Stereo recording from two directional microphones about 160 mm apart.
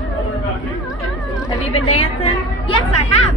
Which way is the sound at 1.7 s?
30° left (ahead or behind).